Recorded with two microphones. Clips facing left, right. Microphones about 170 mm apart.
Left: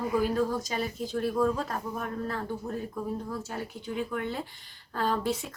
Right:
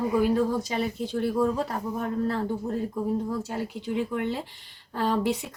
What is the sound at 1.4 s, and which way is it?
Speech, 25° right (ahead or behind).